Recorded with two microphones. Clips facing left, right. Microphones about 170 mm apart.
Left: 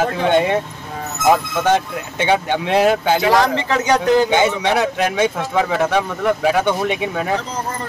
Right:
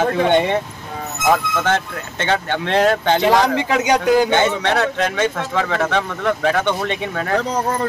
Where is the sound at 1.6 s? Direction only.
15° left (ahead or behind).